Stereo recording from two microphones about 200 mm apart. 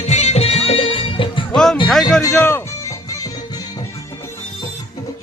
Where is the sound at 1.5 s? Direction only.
Centre (ahead or behind).